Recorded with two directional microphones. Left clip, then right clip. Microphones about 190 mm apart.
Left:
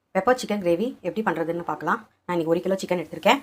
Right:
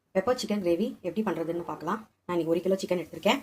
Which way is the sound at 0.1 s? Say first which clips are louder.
Left 5 dB; 10° left (ahead or behind).